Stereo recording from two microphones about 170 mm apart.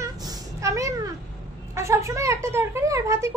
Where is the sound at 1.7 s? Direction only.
15° right (ahead or behind).